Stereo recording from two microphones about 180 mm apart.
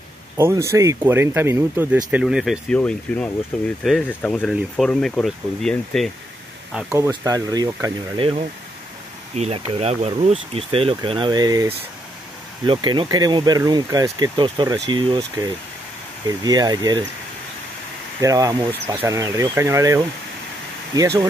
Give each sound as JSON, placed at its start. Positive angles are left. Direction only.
{"t": 0.4, "sound": "speech", "side_deg": -15}
{"t": 6.9, "sound": "speech", "side_deg": -20}
{"t": 9.3, "sound": "speech", "side_deg": -35}
{"t": 18.2, "sound": "speech", "side_deg": -20}